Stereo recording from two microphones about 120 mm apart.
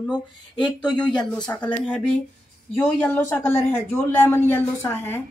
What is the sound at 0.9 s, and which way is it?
Speech, 35° left (ahead or behind).